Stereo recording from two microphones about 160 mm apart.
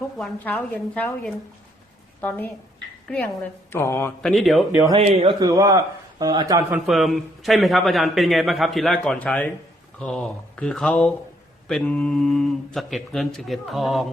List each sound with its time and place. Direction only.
0.2 s speech: 10° left (ahead or behind)
3.7 s speech: 15° left (ahead or behind)
4.2 s a man's voice: centre (ahead or behind)
4.9 s a man's voice: 40° right (ahead or behind)
5.4 s a man's voice: 25° right (ahead or behind)
6.8 s a man's voice: centre (ahead or behind)